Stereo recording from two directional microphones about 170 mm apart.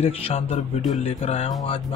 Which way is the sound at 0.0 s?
40° left (ahead or behind).